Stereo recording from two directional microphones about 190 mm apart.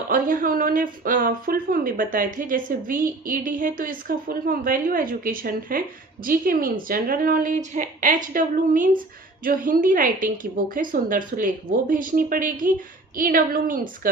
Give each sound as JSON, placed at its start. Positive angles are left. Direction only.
{"t": 0.1, "sound": "speech", "side_deg": -50}